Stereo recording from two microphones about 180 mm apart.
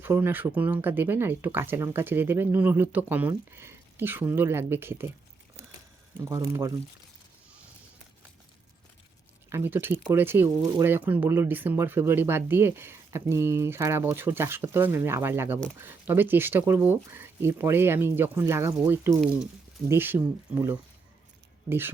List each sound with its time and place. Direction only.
0.0 s speech: 10° right (ahead or behind)
6.1 s speech: 20° right (ahead or behind)
9.5 s speech: 15° right (ahead or behind)